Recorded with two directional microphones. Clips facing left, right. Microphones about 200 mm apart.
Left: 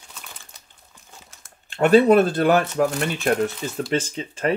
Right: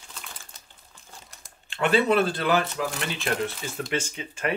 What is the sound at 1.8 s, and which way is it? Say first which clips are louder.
Speech: left 7 dB; 45° left (ahead or behind).